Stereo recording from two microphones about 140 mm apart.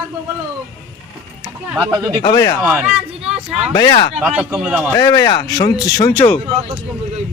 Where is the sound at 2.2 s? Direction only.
30° left (ahead or behind).